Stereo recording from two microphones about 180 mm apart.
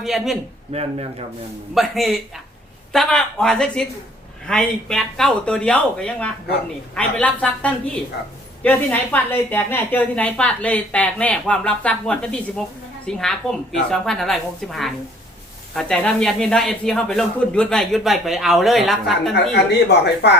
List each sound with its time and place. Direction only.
0.0 s speech: centre (ahead or behind)
0.7 s speech: 35° right (ahead or behind)
1.7 s a woman's voice: centre (ahead or behind)
19.5 s speech: 70° left (ahead or behind)